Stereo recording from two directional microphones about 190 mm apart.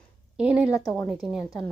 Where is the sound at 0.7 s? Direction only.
15° left (ahead or behind).